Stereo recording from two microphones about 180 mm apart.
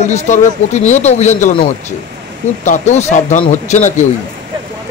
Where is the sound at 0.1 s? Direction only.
40° left (ahead or behind).